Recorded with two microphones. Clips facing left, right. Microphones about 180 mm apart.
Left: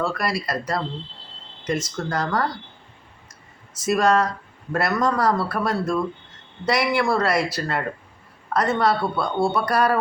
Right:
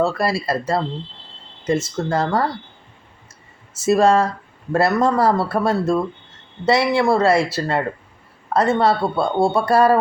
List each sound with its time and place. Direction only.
0.0 s speech: 25° right (ahead or behind)
3.8 s speech: 25° right (ahead or behind)